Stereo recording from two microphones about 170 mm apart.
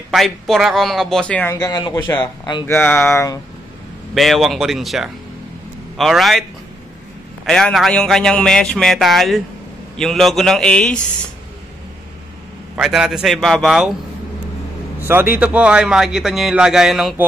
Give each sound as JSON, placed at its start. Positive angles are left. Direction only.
{"t": 0.1, "sound": "a man's voice", "side_deg": 0}
{"t": 1.5, "sound": "a man's voice", "side_deg": 20}
{"t": 4.1, "sound": "a man's voice", "side_deg": 0}
{"t": 7.4, "sound": "a man's voice", "side_deg": 0}
{"t": 12.7, "sound": "a man's voice", "side_deg": -5}
{"t": 15.0, "sound": "a man's voice", "side_deg": -10}